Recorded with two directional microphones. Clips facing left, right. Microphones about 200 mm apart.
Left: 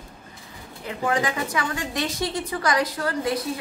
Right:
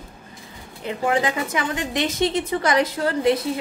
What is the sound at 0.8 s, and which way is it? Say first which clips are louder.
A woman's voice: right 3 dB; 25° right (ahead or behind).